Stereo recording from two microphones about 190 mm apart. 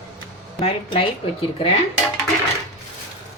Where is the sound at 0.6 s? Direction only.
30° left (ahead or behind).